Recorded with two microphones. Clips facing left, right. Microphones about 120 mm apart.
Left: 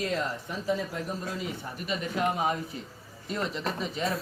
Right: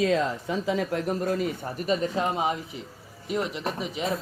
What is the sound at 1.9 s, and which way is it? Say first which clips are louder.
Speech: right 3 dB; 25° right (ahead or behind).